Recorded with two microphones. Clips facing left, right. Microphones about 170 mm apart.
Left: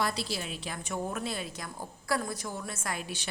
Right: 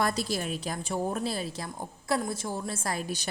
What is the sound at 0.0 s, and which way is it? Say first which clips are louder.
A woman's voice: right 4 dB; 45° right (ahead or behind).